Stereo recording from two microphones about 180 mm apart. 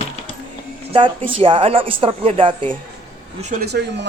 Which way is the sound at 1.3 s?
30° right (ahead or behind).